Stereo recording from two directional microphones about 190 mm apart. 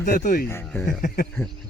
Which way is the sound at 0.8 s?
45° left (ahead or behind).